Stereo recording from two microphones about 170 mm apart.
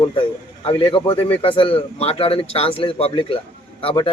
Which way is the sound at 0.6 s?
30° left (ahead or behind).